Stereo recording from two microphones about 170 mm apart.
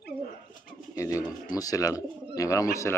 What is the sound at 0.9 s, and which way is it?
Speech, 20° left (ahead or behind).